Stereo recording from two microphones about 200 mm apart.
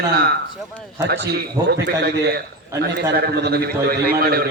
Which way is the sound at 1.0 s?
55° right (ahead or behind).